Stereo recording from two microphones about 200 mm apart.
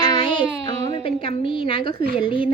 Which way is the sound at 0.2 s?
25° left (ahead or behind).